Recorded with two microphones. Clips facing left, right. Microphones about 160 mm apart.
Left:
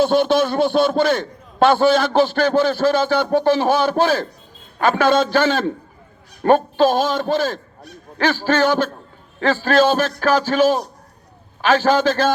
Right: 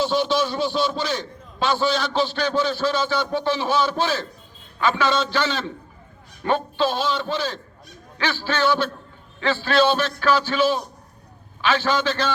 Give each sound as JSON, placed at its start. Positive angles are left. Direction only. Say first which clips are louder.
{"t": 0.0, "sound": "a man's voice", "louder": "left 6 dB", "side_deg": 55}